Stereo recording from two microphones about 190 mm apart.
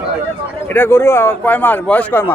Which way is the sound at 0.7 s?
10° left (ahead or behind).